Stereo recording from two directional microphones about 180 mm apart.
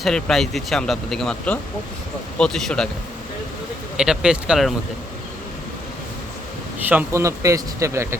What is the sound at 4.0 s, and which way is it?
Speech, 5° right (ahead or behind).